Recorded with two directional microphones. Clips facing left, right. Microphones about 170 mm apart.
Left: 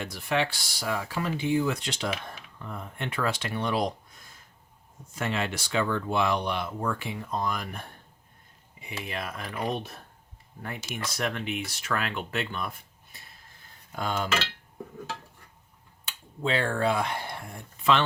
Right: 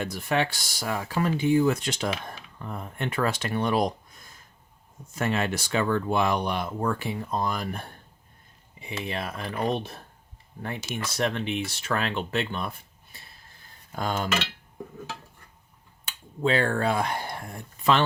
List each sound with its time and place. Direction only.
0.0 s speech: 45° right (ahead or behind)
5.1 s speech: 45° right (ahead or behind)
9.0 s speech: 30° right (ahead or behind)
13.9 s speech: 40° right (ahead or behind)
16.4 s speech: 45° right (ahead or behind)